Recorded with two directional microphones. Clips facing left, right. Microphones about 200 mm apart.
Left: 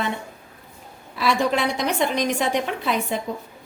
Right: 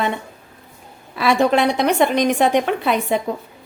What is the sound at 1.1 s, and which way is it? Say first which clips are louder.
A woman's voice: right 5 dB; 60° right (ahead or behind).